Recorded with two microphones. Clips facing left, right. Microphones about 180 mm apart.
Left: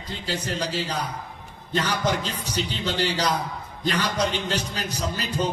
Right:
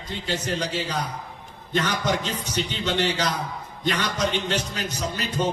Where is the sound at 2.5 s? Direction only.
35° left (ahead or behind).